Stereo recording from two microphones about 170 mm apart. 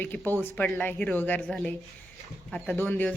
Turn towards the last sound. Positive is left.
turn(degrees=10)  # may be behind; listen again after turning